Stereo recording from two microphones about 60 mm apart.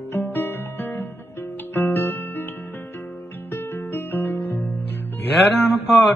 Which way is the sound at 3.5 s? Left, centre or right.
Left.